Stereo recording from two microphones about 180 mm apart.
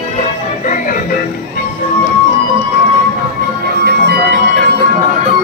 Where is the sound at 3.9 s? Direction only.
60° right (ahead or behind).